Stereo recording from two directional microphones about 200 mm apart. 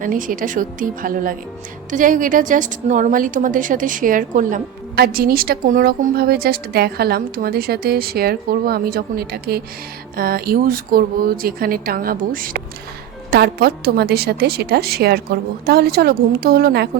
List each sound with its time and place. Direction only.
0.0 s a woman's voice: 40° right (ahead or behind)